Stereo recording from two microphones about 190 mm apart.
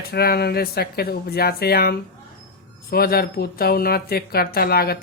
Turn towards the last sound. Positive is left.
turn(degrees=55)  # may be behind; listen again after turning